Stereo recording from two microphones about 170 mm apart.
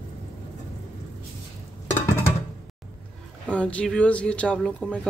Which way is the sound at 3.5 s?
5° left (ahead or behind).